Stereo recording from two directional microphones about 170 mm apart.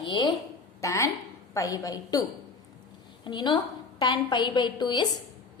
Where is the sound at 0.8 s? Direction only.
15° left (ahead or behind).